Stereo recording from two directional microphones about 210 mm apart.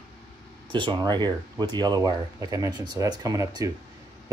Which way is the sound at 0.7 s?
20° right (ahead or behind).